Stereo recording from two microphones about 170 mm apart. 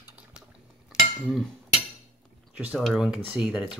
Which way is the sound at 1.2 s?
5° left (ahead or behind).